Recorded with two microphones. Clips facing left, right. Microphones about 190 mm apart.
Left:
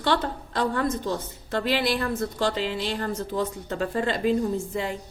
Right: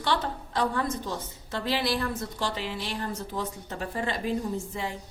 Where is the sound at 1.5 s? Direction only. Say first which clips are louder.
Left 4 dB; 55° left (ahead or behind).